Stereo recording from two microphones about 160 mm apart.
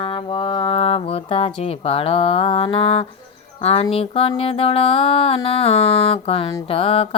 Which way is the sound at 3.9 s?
35° left (ahead or behind).